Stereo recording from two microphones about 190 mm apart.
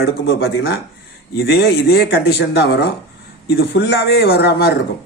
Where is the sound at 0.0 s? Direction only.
60° left (ahead or behind).